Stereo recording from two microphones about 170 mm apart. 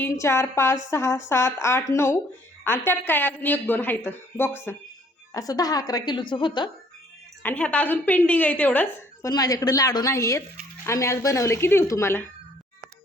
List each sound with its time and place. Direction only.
0.0 s a woman's voice: 15° left (ahead or behind)
7.4 s a woman's voice: 10° left (ahead or behind)
9.3 s a woman's voice: 20° left (ahead or behind)